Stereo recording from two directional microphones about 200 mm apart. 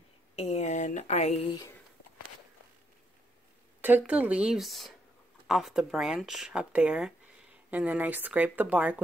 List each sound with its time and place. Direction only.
0.4 s speech: 35° left (ahead or behind)
3.8 s speech: 5° right (ahead or behind)